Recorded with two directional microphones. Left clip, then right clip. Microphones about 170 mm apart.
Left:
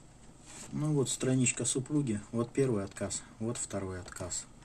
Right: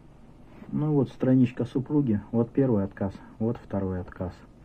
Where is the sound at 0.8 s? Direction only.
45° right (ahead or behind).